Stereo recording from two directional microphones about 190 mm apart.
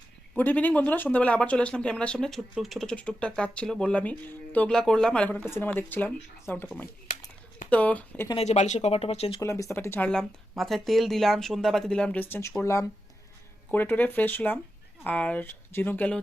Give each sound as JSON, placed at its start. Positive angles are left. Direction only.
{"t": 0.3, "sound": "speech", "side_deg": 10}
{"t": 8.3, "sound": "speech", "side_deg": 35}
{"t": 9.4, "sound": "speech", "side_deg": 15}